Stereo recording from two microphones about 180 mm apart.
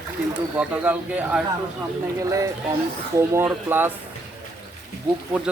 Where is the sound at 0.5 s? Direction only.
10° right (ahead or behind).